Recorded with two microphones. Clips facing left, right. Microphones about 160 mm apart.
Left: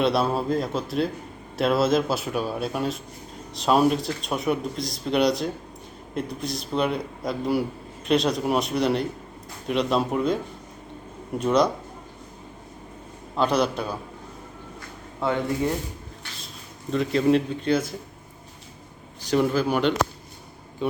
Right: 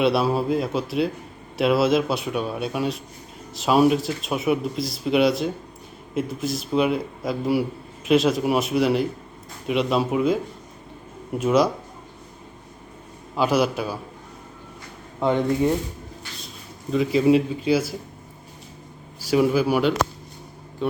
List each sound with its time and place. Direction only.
0.0 s speech: centre (ahead or behind)
13.3 s speech: 5° right (ahead or behind)
15.2 s a man's voice: 15° right (ahead or behind)
16.9 s speech: 5° right (ahead or behind)
19.2 s a man's voice: 5° right (ahead or behind)